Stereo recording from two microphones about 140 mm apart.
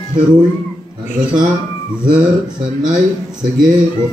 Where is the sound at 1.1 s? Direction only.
5° right (ahead or behind).